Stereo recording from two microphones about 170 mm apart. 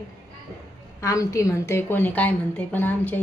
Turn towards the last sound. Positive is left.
turn(degrees=10)  # may be behind; listen again after turning